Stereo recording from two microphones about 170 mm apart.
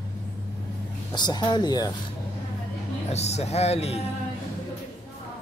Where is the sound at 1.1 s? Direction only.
25° left (ahead or behind).